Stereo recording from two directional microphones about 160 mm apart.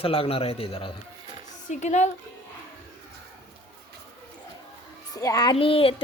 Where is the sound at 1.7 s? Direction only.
50° left (ahead or behind).